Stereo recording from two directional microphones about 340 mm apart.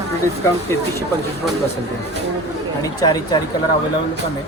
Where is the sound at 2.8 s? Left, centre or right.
Centre.